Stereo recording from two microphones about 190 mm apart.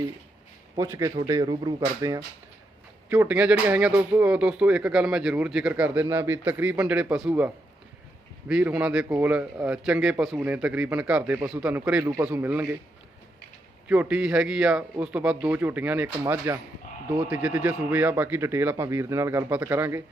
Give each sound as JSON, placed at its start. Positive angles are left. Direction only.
{"t": 0.8, "sound": "a man's voice", "side_deg": -15}
{"t": 13.8, "sound": "speech", "side_deg": -5}